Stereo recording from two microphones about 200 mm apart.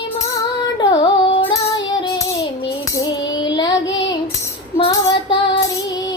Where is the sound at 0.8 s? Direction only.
25° left (ahead or behind).